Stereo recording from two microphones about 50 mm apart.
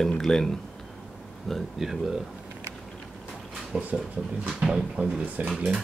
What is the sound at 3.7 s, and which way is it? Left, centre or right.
Speech, centre.